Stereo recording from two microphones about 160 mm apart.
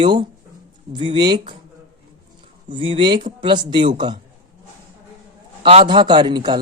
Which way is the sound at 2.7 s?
30° right (ahead or behind).